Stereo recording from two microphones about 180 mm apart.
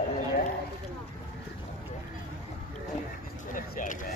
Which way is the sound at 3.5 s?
50° left (ahead or behind).